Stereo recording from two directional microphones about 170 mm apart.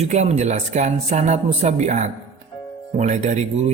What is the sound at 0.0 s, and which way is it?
Speech, 40° right (ahead or behind).